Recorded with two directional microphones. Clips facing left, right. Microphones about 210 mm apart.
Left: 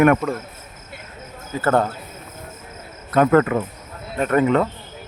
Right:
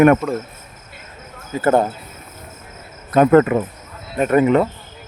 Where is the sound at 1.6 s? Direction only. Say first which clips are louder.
Right 3 dB; 10° right (ahead or behind).